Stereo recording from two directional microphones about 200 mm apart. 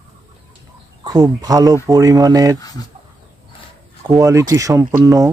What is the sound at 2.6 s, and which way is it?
Speech, 20° left (ahead or behind).